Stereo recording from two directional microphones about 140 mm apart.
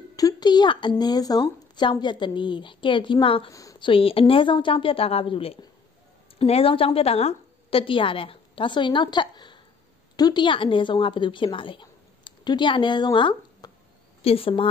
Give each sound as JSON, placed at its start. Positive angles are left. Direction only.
{"t": 0.1, "sound": "a woman's voice", "side_deg": 25}